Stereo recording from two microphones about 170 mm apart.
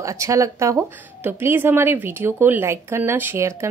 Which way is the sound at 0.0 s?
20° right (ahead or behind).